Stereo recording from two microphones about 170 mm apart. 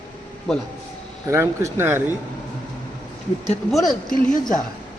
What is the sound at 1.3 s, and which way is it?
Speech, 15° right (ahead or behind).